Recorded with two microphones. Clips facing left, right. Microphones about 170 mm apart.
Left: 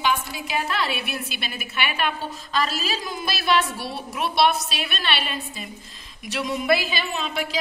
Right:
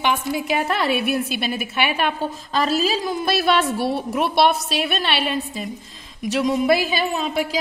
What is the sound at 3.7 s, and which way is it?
Speech, 55° right (ahead or behind).